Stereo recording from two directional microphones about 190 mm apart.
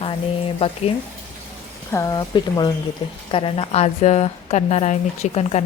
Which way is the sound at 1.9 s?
15° left (ahead or behind).